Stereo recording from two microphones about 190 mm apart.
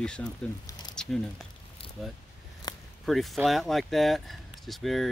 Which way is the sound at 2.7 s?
20° left (ahead or behind).